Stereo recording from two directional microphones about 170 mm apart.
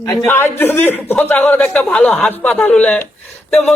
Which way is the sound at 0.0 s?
20° left (ahead or behind).